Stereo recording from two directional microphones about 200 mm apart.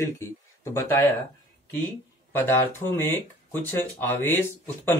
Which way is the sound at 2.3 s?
10° left (ahead or behind).